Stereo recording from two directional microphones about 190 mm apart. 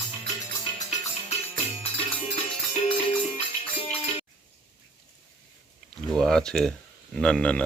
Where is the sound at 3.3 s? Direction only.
35° left (ahead or behind).